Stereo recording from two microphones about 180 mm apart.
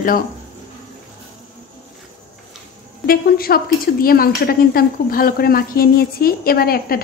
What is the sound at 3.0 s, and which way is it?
A woman's voice, 55° left (ahead or behind).